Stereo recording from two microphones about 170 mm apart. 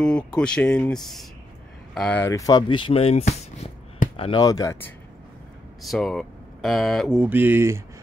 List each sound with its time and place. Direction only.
0.0 s speech: 5° left (ahead or behind); by 2.8 s 20° left (ahead or behind)
2.9 s speech: 35° left (ahead or behind)
4.4 s speech: 20° left (ahead or behind)
5.8 s speech: centre (ahead or behind)